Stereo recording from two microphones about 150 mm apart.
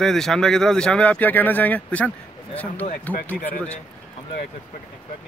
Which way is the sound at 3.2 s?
10° left (ahead or behind).